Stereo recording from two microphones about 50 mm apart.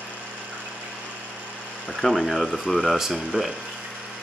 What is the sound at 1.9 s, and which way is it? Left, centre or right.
Speech, centre.